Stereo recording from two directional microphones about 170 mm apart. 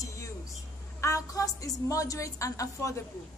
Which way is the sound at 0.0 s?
20° left (ahead or behind).